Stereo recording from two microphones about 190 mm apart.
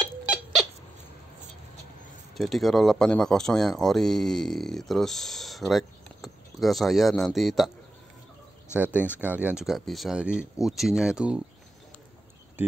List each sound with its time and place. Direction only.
2.3 s speech: centre (ahead or behind)
8.7 s speech: 10° right (ahead or behind)
12.6 s speech: 10° right (ahead or behind)